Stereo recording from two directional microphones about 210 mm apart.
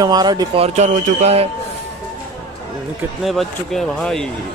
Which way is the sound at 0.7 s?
35° right (ahead or behind).